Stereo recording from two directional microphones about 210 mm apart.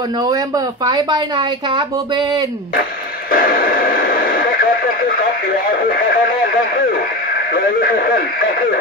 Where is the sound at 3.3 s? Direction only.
45° left (ahead or behind).